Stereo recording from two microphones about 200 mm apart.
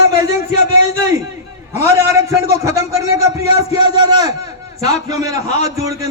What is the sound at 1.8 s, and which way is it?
A man's voice, 15° right (ahead or behind).